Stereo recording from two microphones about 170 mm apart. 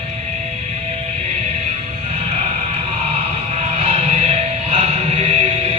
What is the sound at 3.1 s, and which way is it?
Music, 35° right (ahead or behind).